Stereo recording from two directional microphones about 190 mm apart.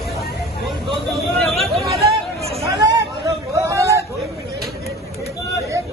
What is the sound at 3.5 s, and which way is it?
Hubbub, 15° right (ahead or behind).